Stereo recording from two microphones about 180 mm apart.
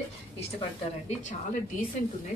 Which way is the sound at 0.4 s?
35° left (ahead or behind).